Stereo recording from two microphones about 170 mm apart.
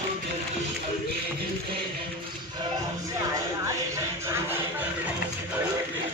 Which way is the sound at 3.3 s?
20° right (ahead or behind).